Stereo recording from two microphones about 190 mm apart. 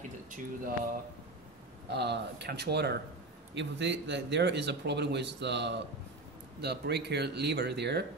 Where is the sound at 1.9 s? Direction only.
60° right (ahead or behind).